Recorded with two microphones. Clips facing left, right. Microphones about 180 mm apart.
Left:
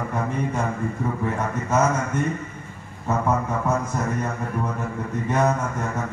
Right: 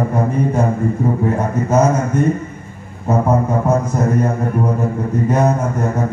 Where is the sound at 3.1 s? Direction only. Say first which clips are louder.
Right 7 dB; 35° right (ahead or behind).